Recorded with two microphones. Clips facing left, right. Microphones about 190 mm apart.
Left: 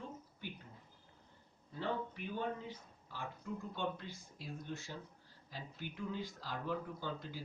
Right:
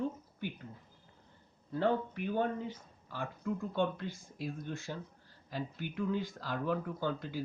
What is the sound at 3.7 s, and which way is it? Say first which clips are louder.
Speech: right 8 dB; 60° right (ahead or behind).